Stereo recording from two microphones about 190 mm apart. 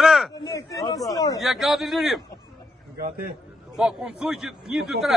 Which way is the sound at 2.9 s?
55° right (ahead or behind).